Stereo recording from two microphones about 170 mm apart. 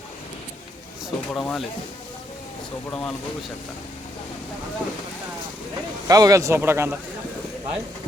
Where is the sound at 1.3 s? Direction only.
Centre (ahead or behind).